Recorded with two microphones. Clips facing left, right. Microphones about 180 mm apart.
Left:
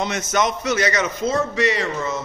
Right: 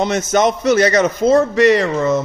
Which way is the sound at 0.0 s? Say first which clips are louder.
Right 6 dB; 35° right (ahead or behind).